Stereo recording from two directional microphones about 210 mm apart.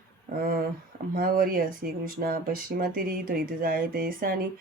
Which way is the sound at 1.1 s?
45° right (ahead or behind).